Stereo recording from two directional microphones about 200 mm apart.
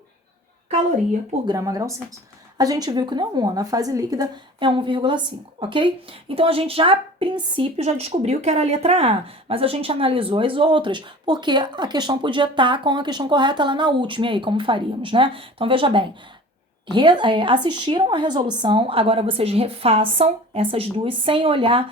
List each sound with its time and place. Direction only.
1.5 s a woman's voice: 15° right (ahead or behind)